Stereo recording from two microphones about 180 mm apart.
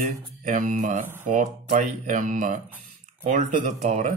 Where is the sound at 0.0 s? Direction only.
45° right (ahead or behind).